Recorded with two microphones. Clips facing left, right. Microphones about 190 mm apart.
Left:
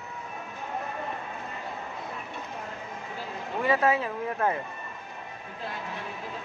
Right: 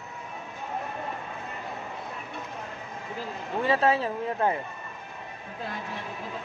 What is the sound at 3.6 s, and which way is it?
Speech, 30° right (ahead or behind).